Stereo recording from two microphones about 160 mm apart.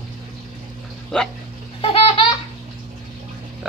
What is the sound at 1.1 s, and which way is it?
Speech, 5° left (ahead or behind).